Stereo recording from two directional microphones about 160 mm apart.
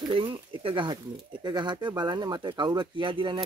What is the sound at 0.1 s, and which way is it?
Speech, 30° right (ahead or behind).